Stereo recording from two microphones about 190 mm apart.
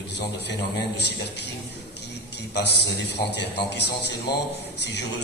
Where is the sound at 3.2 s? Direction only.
60° left (ahead or behind).